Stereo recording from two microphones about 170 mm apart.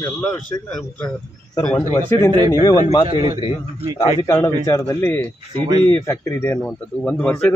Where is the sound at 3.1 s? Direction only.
25° right (ahead or behind).